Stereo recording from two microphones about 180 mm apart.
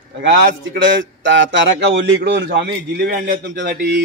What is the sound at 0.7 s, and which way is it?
A man's voice, 90° right.